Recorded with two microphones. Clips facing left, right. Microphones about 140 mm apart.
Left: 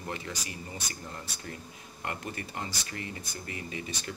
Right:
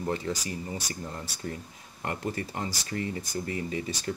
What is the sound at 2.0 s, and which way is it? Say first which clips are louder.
Speech: right 5 dB; 35° right (ahead or behind).